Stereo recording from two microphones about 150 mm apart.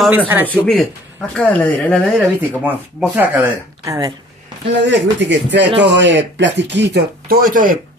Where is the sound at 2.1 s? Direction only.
10° right (ahead or behind).